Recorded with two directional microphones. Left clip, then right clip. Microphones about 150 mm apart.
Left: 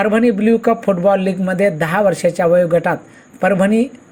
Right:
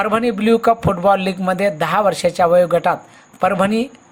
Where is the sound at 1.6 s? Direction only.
15° right (ahead or behind).